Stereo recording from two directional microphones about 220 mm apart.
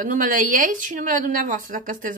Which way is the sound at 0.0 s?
35° right (ahead or behind).